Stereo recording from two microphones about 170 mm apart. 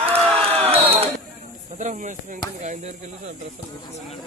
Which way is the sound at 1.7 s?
45° right (ahead or behind).